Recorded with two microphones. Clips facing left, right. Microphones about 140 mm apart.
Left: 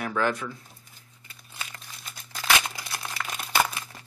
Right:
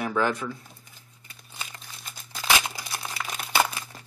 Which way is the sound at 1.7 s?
Centre (ahead or behind).